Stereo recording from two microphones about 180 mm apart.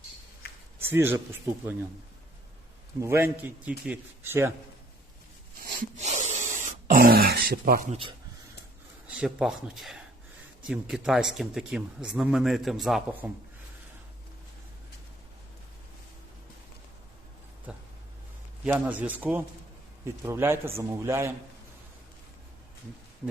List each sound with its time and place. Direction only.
0.8 s a man's voice: 10° right (ahead or behind)
3.0 s a man's voice: 15° right (ahead or behind)
6.0 s throat clearing: 40° right (ahead or behind); by 7.8 s 55° right (ahead or behind)
7.9 s speech: 30° right (ahead or behind)
9.0 s speech: 5° right (ahead or behind)
17.7 s a sound: 5° right (ahead or behind)
18.6 s a man's voice: 10° right (ahead or behind)